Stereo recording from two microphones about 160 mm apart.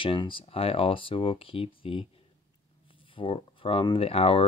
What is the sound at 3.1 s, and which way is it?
Speech, 35° left (ahead or behind).